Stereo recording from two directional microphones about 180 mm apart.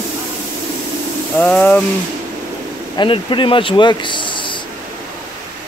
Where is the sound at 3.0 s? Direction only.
25° left (ahead or behind).